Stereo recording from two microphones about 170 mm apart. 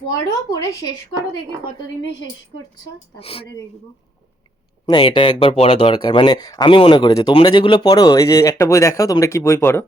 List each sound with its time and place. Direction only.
0.5 s speech: 20° left (ahead or behind)
2.0 s a woman's voice: 90° left
3.2 s speech: 35° left (ahead or behind)
4.9 s speech: 30° left (ahead or behind)